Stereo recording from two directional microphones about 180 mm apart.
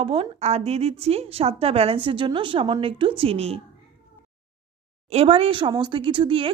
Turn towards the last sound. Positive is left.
turn(degrees=-30)  # may be behind; listen again after turning